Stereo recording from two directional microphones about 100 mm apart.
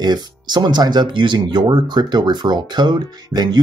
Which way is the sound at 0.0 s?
45° right (ahead or behind).